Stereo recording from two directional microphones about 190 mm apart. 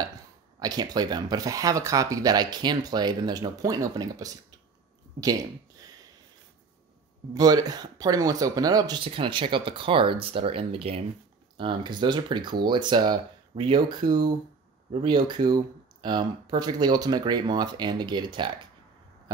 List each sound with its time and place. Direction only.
0.6 s speech: 20° right (ahead or behind)
7.3 s speech: 20° right (ahead or behind)